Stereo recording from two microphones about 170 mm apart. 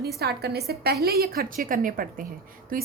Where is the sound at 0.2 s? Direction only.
70° right (ahead or behind).